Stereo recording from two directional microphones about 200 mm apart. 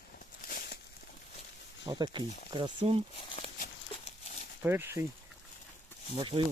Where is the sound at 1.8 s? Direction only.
20° right (ahead or behind).